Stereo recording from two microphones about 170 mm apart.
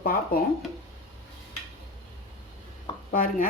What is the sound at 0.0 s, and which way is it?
Speech, 60° left (ahead or behind).